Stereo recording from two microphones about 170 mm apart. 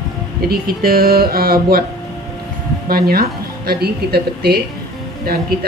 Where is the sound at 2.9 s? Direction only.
65° right (ahead or behind).